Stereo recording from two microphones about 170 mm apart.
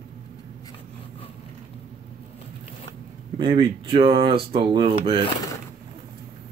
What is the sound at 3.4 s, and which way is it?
Speech, 30° right (ahead or behind).